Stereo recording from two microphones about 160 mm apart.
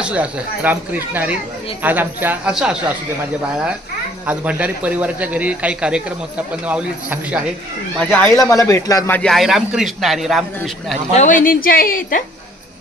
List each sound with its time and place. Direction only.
0.0 s a man's voice: 5° right (ahead or behind)
4.3 s a man's voice: 10° right (ahead or behind)
8.0 s speech: 10° left (ahead or behind)
9.2 s a man's voice: centre (ahead or behind)
11.1 s a woman's voice: 55° left (ahead or behind)